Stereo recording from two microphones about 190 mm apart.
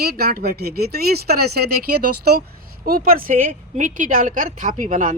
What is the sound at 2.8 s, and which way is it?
A woman's voice, 50° right (ahead or behind).